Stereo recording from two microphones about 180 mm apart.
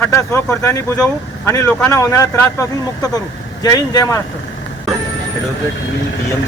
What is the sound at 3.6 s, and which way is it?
Speech, 20° left (ahead or behind).